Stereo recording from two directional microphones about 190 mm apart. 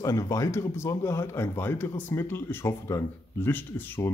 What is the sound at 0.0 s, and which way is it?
Speech, 15° left (ahead or behind).